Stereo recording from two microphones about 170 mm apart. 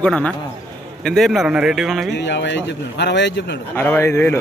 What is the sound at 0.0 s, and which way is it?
Speech, 5° left (ahead or behind).